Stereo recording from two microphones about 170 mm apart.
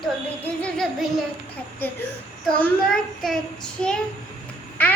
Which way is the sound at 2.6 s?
5° left (ahead or behind).